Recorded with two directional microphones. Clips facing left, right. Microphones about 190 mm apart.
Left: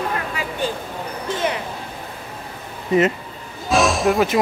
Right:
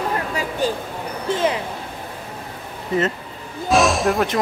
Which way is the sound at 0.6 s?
40° right (ahead or behind).